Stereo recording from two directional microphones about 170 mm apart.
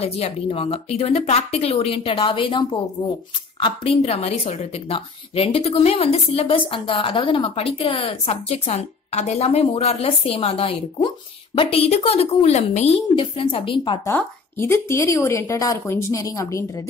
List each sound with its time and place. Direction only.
0.0 s a woman's voice: 35° left (ahead or behind)
14.0 s a woman's voice: 15° left (ahead or behind)